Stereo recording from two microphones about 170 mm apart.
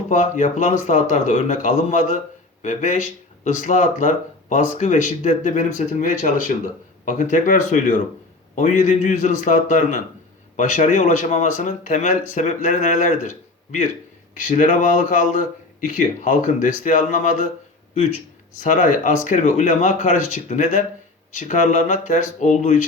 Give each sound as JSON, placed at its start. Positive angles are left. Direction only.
{"t": 0.1, "sound": "speech", "side_deg": 45}
{"t": 18.6, "sound": "speech", "side_deg": 50}